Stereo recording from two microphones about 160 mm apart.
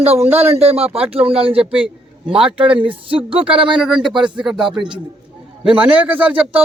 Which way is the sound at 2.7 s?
35° right (ahead or behind).